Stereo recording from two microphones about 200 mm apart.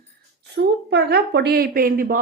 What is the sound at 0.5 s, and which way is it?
Speech, 55° right (ahead or behind).